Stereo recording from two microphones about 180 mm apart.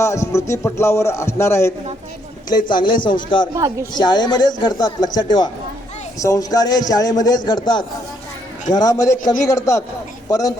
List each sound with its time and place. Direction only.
0.0 s a man's voice: 15° left (ahead or behind)
3.5 s speech: 15° right (ahead or behind)
3.9 s speech: 25° left (ahead or behind)
8.7 s a man's voice: 20° left (ahead or behind)